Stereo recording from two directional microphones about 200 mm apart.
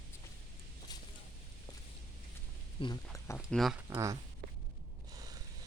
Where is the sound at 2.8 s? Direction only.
20° left (ahead or behind).